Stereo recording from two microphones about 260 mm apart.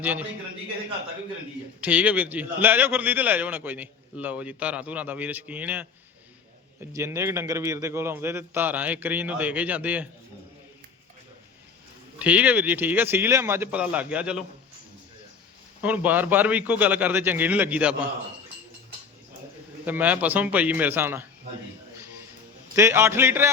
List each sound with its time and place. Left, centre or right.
0.0 s a man's voice: centre
1.8 s a man's voice: centre
12.2 s a man's voice: centre
15.8 s a man's voice: centre
19.8 s a man's voice: centre
22.7 s a man's voice: centre